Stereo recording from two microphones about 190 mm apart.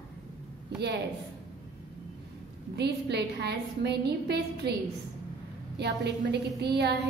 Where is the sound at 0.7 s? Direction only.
60° right (ahead or behind).